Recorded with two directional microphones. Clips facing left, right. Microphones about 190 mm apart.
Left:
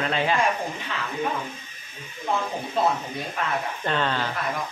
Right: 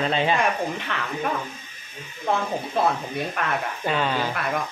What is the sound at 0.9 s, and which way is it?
Speech, 65° right (ahead or behind).